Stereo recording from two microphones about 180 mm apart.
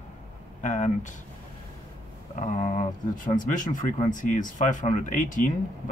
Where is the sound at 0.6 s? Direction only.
45° left (ahead or behind).